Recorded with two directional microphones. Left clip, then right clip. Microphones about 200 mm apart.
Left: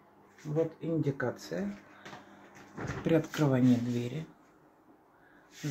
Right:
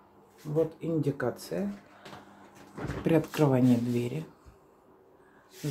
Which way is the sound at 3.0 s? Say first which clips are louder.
Right 3 dB; 10° right (ahead or behind).